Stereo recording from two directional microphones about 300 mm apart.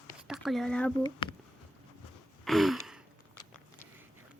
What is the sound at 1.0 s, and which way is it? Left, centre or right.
Speech, centre.